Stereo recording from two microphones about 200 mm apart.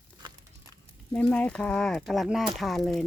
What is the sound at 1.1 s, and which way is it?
Speech, 5° left (ahead or behind).